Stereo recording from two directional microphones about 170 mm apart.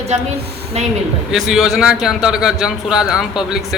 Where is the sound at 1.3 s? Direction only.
5° right (ahead or behind).